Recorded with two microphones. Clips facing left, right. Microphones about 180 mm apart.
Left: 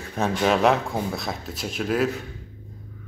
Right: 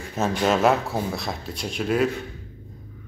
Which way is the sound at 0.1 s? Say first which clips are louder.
Even; centre (ahead or behind).